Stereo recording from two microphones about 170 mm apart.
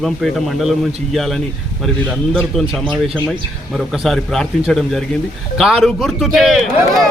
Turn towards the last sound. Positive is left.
turn(degrees=0)  # may be behind; listen again after turning